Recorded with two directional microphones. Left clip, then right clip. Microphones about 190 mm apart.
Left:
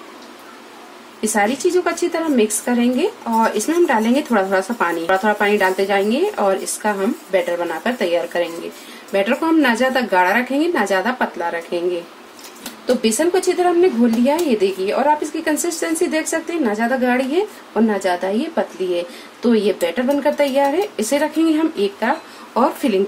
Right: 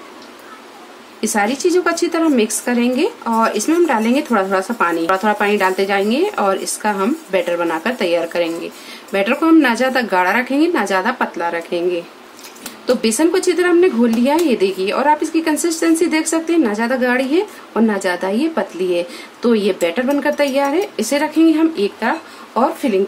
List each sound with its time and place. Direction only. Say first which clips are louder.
1.2 s a woman's voice: right 1 dB; 15° right (ahead or behind)
13.0 s a woman's voice: right 2 dB; 25° right (ahead or behind)
22.5 s speech: right 1 dB; 5° left (ahead or behind)